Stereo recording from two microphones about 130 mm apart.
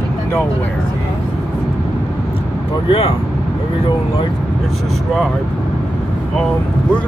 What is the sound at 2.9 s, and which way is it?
Speech, 45° left (ahead or behind).